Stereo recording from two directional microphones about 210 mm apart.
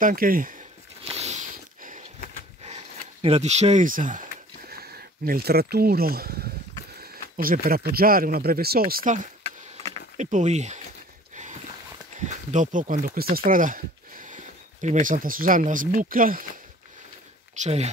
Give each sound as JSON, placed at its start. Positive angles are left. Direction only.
{"t": 0.0, "sound": "speech", "side_deg": -45}
{"t": 1.0, "sound": "a sound", "side_deg": -30}
{"t": 7.0, "sound": "speech", "side_deg": -45}
{"t": 12.2, "sound": "speech", "side_deg": -35}
{"t": 17.6, "sound": "speech", "side_deg": -30}